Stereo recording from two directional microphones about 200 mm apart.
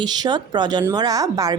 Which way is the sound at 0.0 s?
20° right (ahead or behind).